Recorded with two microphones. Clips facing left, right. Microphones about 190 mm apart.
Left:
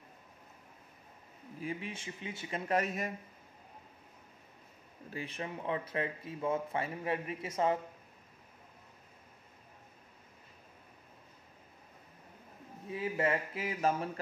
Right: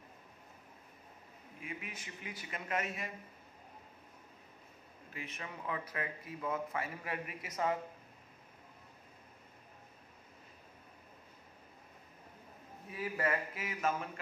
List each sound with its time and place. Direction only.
1.6 s speech: 30° left (ahead or behind)
5.1 s speech: 30° left (ahead or behind)
12.9 s speech: 25° left (ahead or behind)